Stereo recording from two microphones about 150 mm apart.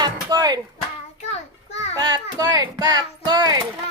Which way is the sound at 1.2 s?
45° left (ahead or behind).